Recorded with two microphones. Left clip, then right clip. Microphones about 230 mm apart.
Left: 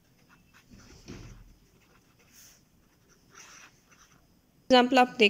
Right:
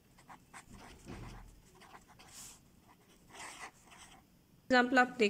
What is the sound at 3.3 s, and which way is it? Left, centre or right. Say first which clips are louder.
Dog: right 3 dB; right.